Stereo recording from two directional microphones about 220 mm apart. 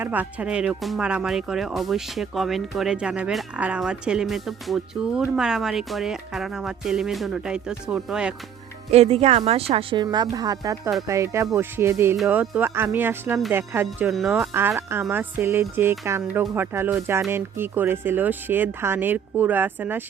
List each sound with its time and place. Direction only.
0.0 s speech: 10° right (ahead or behind)
8.9 s speech: 30° right (ahead or behind); by 20.1 s 10° right (ahead or behind)